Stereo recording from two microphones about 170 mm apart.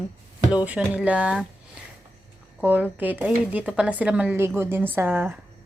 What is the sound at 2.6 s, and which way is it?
Speech, 10° right (ahead or behind).